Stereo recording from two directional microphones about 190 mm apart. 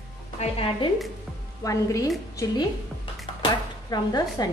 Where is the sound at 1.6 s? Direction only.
20° left (ahead or behind).